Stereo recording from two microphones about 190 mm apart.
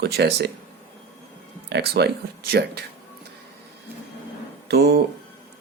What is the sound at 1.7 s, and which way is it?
Speech, 60° right (ahead or behind).